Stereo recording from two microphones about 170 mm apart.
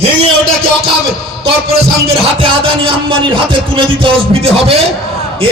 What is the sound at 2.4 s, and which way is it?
Music, 30° right (ahead or behind).